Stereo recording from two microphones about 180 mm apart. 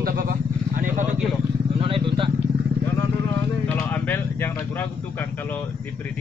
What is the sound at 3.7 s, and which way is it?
Speech, 10° left (ahead or behind).